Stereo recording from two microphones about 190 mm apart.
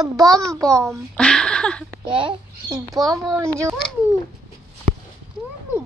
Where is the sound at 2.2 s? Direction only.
25° right (ahead or behind).